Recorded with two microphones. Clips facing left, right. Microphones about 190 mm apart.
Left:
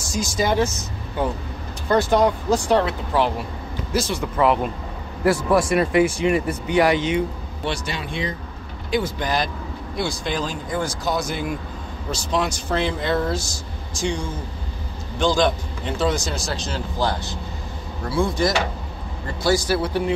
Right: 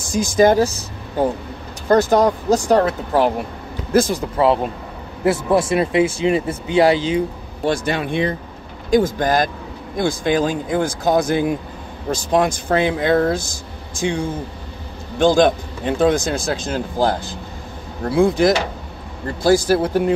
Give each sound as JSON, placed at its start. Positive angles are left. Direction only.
{"t": 0.0, "sound": "speech", "side_deg": -55}
{"t": 0.6, "sound": "a man's voice", "side_deg": -35}
{"t": 5.2, "sound": "speech", "side_deg": -25}
{"t": 7.6, "sound": "speech", "side_deg": -50}
{"t": 8.9, "sound": "a man's voice", "side_deg": -45}
{"t": 19.4, "sound": "a man's voice", "side_deg": -50}